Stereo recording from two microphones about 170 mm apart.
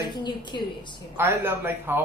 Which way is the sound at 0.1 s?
25° left (ahead or behind).